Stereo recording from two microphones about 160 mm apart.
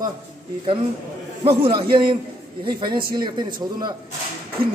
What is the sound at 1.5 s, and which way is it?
A man's voice, 35° right (ahead or behind).